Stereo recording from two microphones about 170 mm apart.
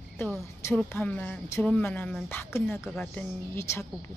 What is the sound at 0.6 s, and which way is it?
Speech, 15° left (ahead or behind).